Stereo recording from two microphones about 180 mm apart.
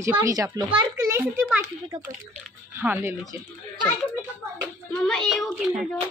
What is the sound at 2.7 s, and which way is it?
Speech, 10° right (ahead or behind).